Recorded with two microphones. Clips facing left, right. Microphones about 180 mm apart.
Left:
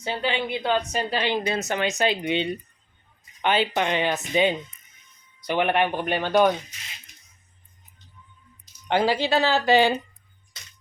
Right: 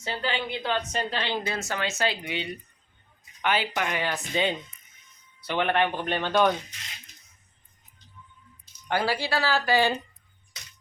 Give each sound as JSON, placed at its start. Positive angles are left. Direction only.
{"t": 0.0, "sound": "a woman's voice", "side_deg": 15}
{"t": 8.9, "sound": "a woman's voice", "side_deg": 20}